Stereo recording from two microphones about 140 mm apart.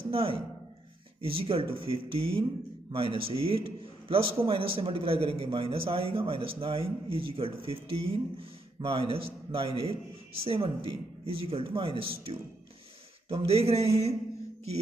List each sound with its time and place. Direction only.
0.1 s a man's voice: 40° right (ahead or behind)
13.5 s speech: 45° right (ahead or behind)